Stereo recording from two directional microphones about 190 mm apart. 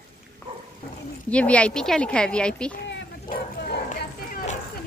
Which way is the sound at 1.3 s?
5° left (ahead or behind).